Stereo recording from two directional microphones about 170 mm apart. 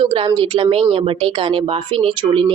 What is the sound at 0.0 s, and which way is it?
Speech, 30° right (ahead or behind).